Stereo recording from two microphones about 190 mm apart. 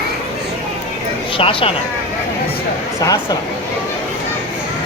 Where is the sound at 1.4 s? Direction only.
30° left (ahead or behind).